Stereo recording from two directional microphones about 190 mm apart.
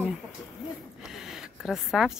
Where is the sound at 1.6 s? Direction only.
Centre (ahead or behind).